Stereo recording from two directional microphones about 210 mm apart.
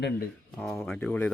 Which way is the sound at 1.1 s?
10° left (ahead or behind).